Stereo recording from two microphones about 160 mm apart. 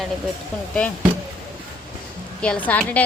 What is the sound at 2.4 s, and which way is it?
Speech, 10° left (ahead or behind).